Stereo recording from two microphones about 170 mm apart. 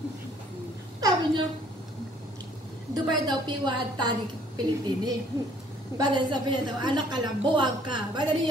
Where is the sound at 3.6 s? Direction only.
25° right (ahead or behind).